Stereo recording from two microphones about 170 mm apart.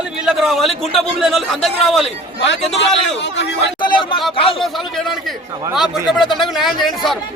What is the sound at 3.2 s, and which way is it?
Speech, 90° left.